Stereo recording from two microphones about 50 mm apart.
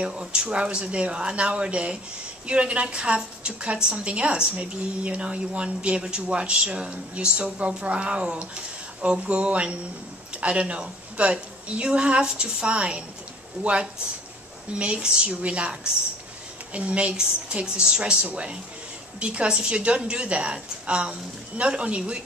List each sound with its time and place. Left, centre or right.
0.0 s a woman's voice: centre